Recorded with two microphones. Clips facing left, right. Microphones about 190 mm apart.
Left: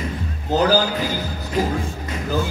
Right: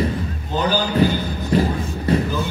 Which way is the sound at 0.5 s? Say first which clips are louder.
Left 4 dB; 85° left.